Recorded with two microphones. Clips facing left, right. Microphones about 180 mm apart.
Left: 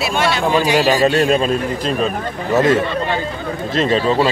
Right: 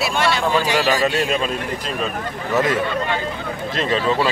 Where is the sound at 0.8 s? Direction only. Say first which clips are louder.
Left 5 dB; 30° left (ahead or behind).